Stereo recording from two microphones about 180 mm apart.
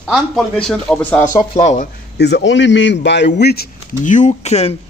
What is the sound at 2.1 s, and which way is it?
Speech, 70° left (ahead or behind).